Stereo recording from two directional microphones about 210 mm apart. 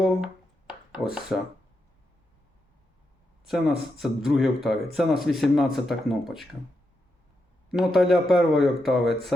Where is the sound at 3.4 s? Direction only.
Centre (ahead or behind).